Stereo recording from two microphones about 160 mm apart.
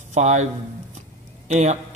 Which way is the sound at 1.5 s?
45° right (ahead or behind).